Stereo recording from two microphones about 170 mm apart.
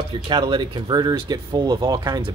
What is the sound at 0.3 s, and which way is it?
Speech, 25° right (ahead or behind).